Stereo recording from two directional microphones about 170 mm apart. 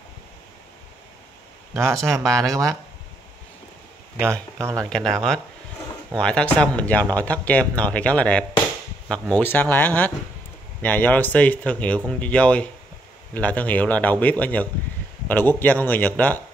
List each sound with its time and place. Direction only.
1.8 s speech: 15° right (ahead or behind)
4.2 s speech: 15° right (ahead or behind)
4.8 s speech: 5° left (ahead or behind)